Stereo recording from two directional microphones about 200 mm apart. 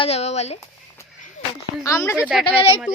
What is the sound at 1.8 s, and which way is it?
Speech, 15° left (ahead or behind).